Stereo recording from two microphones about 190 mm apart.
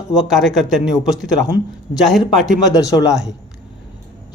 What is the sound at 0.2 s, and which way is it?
Speech, centre (ahead or behind).